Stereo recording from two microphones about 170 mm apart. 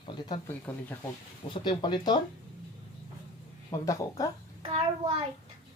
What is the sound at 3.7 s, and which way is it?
Speech, 20° left (ahead or behind).